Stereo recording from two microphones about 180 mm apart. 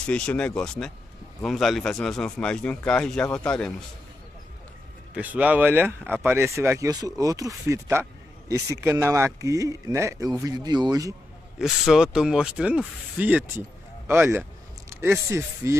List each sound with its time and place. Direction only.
0.0 s speech: 5° left (ahead or behind)
5.1 s speech: 10° right (ahead or behind)
11.5 s speech: 5° right (ahead or behind)